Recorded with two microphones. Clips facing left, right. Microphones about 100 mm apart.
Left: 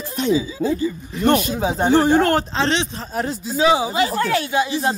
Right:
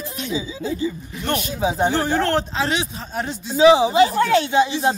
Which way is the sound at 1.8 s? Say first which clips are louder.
Left 6 dB; 15° left (ahead or behind).